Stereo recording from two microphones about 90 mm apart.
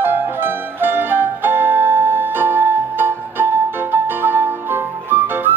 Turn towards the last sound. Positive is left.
turn(degrees=-25)  # may be behind; listen again after turning